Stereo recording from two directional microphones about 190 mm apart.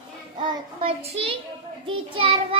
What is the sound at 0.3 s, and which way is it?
Child singing, 30° right (ahead or behind).